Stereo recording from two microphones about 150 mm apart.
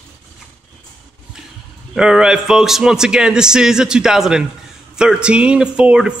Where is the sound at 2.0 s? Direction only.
5° right (ahead or behind).